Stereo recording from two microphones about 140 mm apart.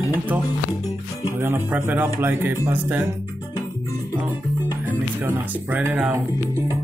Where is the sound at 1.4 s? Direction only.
15° right (ahead or behind).